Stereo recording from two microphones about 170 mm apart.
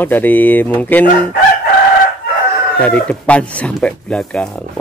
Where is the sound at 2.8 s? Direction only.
5° left (ahead or behind).